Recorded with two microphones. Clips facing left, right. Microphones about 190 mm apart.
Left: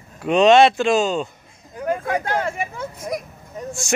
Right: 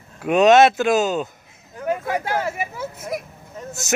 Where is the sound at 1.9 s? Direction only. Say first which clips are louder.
Left 1 dB; 5° right (ahead or behind).